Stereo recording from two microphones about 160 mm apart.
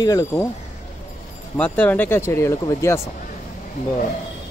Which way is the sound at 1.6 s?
10° left (ahead or behind).